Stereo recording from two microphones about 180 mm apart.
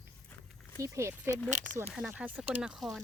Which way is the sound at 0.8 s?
15° right (ahead or behind).